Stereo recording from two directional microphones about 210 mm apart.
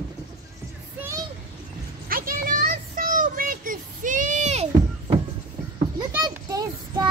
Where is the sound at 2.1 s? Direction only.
40° right (ahead or behind).